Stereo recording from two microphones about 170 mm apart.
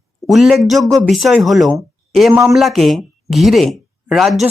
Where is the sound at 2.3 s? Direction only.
15° right (ahead or behind).